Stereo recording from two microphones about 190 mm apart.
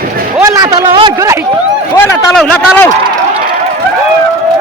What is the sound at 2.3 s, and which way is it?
Speech, centre (ahead or behind).